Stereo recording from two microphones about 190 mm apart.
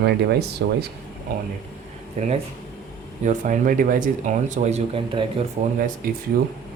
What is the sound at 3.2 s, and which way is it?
Speech, 40° right (ahead or behind).